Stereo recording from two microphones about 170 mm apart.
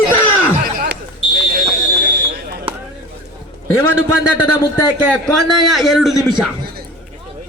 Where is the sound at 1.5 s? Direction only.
65° right (ahead or behind).